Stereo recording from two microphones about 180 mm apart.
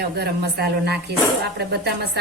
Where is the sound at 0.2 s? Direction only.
65° right (ahead or behind).